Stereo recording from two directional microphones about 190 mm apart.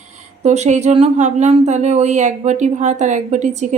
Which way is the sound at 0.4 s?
35° right (ahead or behind).